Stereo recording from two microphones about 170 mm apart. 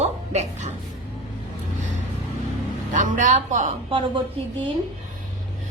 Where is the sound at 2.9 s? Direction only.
45° right (ahead or behind).